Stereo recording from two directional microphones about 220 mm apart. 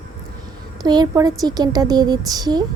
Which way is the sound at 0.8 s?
20° right (ahead or behind).